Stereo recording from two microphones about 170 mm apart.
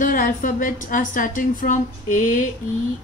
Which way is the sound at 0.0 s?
55° left (ahead or behind).